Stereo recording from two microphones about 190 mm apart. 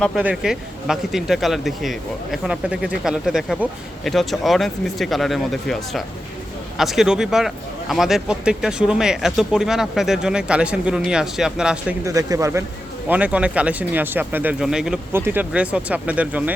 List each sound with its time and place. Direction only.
0.2 s speech: 5° right (ahead or behind)
12.0 s speech: 15° right (ahead or behind)